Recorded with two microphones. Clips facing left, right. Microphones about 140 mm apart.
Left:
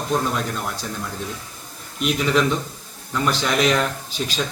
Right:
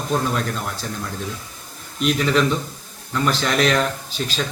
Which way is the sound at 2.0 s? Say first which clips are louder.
Right 1 dB; 10° left (ahead or behind).